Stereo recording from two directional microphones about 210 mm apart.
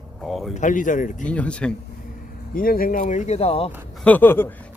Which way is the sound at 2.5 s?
45° left (ahead or behind).